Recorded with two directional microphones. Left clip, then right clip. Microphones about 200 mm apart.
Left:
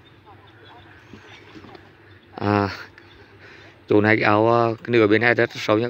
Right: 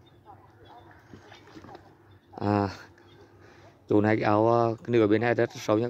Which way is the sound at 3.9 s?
10° right (ahead or behind).